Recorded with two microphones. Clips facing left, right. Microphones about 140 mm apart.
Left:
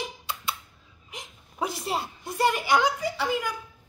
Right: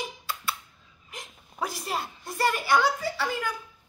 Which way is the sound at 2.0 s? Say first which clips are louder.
Left 1 dB; 20° left (ahead or behind).